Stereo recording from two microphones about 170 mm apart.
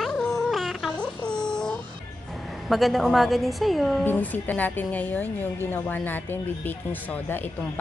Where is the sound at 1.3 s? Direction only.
5° left (ahead or behind).